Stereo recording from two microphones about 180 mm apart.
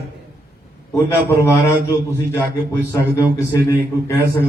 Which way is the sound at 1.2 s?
15° left (ahead or behind).